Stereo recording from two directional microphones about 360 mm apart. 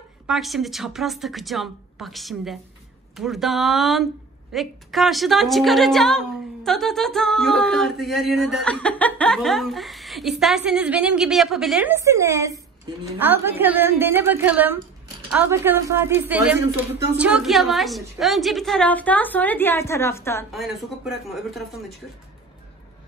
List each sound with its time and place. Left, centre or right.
0.3 s a woman's voice: centre